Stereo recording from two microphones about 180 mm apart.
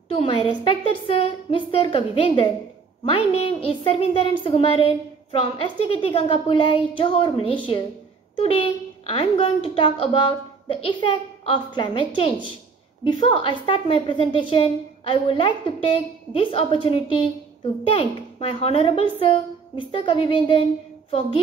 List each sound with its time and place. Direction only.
0.1 s a woman's voice: 30° left (ahead or behind)